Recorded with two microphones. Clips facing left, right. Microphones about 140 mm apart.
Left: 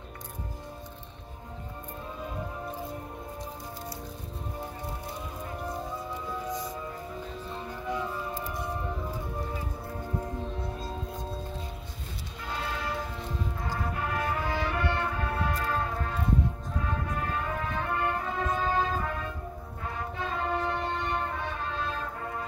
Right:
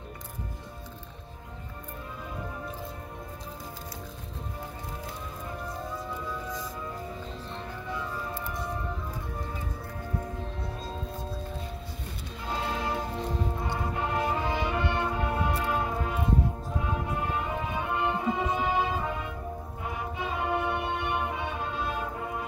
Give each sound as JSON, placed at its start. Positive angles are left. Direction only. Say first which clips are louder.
{"t": 7.5, "sound": "music", "louder": "left 4 dB", "side_deg": 15}
{"t": 12.6, "sound": "music", "louder": "right 3 dB", "side_deg": -25}
{"t": 13.9, "sound": "music", "louder": "right 3 dB", "side_deg": -25}